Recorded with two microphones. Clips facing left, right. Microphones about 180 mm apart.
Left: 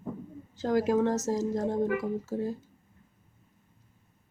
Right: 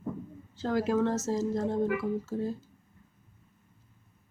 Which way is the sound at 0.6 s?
15° left (ahead or behind).